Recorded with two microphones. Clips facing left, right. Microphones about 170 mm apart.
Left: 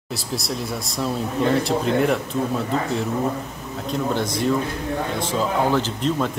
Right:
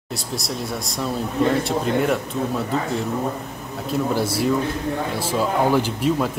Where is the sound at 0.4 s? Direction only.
Centre (ahead or behind).